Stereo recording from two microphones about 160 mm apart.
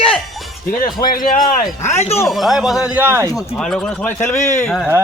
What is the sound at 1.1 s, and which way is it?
Speech, 60° left (ahead or behind).